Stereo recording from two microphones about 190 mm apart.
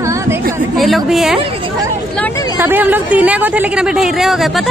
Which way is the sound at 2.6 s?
10° right (ahead or behind).